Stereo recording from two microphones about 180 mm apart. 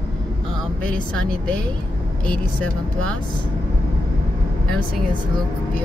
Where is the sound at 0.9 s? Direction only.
5° left (ahead or behind).